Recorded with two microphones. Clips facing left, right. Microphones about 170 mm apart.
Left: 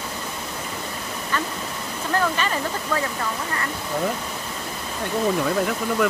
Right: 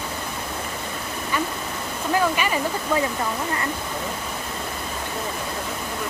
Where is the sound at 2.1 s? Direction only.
10° right (ahead or behind).